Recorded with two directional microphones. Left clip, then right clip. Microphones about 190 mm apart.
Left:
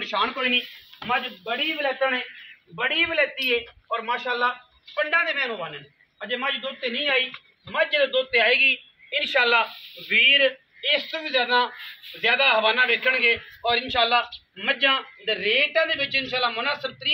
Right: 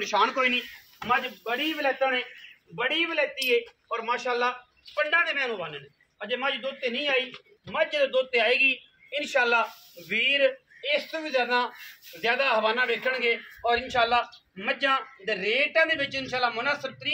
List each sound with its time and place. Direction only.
0.0 s speech: 60° right (ahead or behind)
0.9 s speech: 45° right (ahead or behind)
2.8 s a man's voice: 25° right (ahead or behind)
6.1 s speech: 5° right (ahead or behind); by 17.1 s 15° left (ahead or behind)